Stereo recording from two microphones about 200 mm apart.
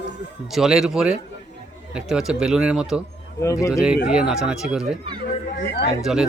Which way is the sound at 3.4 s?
15° left (ahead or behind).